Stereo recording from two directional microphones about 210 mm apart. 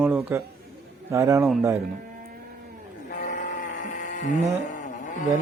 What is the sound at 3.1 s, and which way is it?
Sheep, 35° left (ahead or behind).